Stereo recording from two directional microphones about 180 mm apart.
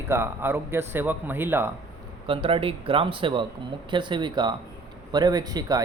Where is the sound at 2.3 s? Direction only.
30° right (ahead or behind).